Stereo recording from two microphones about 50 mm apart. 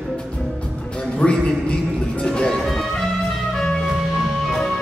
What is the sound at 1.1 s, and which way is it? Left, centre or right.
Music, left.